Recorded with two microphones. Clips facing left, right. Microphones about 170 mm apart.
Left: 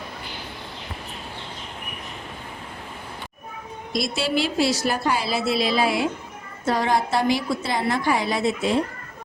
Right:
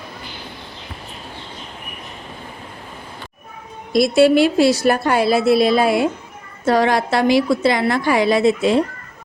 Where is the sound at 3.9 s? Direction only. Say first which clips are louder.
Right 12 dB; 60° right (ahead or behind).